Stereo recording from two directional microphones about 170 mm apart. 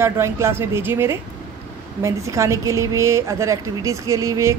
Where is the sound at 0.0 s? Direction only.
15° right (ahead or behind).